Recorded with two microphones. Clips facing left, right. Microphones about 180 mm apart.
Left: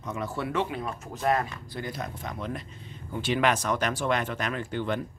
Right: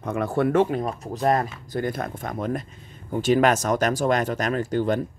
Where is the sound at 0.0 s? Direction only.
60° right (ahead or behind); by 1.5 s 40° right (ahead or behind).